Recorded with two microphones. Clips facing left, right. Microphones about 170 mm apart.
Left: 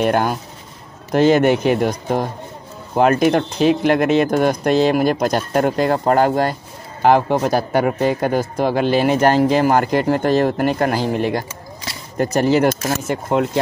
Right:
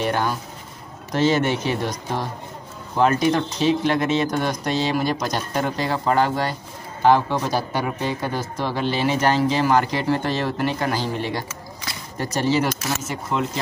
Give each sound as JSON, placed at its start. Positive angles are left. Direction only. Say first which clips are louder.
{"t": 0.0, "sound": "speech", "louder": "left 5 dB", "side_deg": 50}